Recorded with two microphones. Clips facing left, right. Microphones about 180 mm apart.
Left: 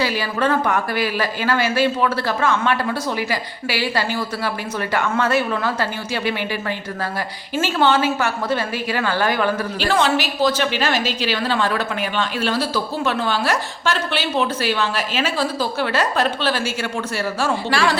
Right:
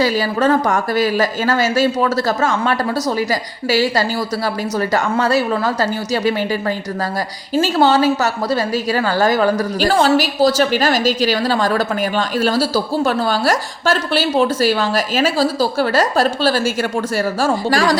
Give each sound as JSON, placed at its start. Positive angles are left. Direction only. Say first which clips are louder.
{"t": 0.0, "sound": "a woman's voice", "louder": "right 5 dB", "side_deg": -40}